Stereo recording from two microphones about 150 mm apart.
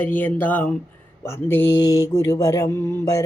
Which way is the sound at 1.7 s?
25° left (ahead or behind).